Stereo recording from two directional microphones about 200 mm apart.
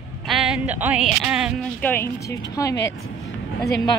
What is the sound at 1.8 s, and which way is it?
Speech, 10° left (ahead or behind).